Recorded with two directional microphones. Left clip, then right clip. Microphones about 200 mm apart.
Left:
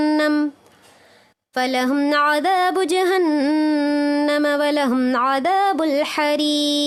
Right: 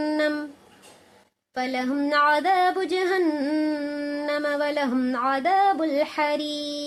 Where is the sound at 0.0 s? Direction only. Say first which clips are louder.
Left 6 dB; 50° left (ahead or behind).